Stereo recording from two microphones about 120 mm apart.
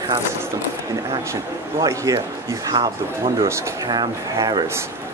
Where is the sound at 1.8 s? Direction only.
25° right (ahead or behind).